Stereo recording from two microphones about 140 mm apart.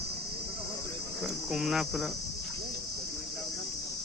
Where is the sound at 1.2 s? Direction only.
5° right (ahead or behind).